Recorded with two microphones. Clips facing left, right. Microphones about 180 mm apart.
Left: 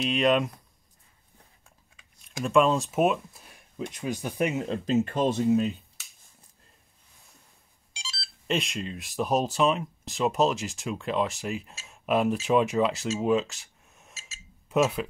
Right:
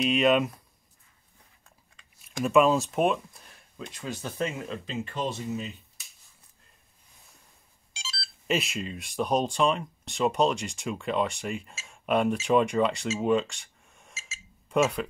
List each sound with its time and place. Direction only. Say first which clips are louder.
0.0 s speech: right 1 dB; centre (ahead or behind)
2.0 s speech: right 3 dB; centre (ahead or behind)
4.8 s speech: left 9 dB; 45° left (ahead or behind)
8.5 s speech: even; 5° right (ahead or behind)